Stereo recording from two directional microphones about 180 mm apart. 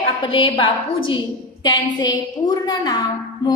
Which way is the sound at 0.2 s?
30° left (ahead or behind).